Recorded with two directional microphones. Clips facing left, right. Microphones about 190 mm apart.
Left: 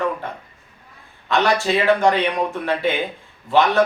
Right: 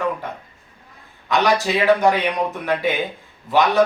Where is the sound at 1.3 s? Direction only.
15° right (ahead or behind).